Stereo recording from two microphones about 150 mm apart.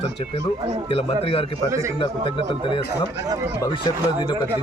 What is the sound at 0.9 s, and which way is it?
Speech, 40° left (ahead or behind).